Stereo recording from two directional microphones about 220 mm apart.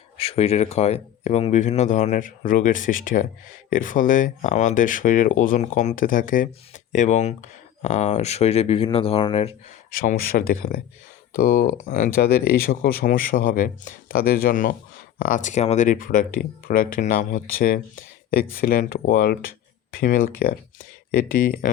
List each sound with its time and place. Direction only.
0.2 s speech: 25° left (ahead or behind)
9.9 s speech: 40° left (ahead or behind)